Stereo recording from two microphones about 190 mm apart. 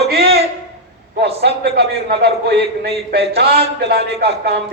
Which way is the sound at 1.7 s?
55° right (ahead or behind).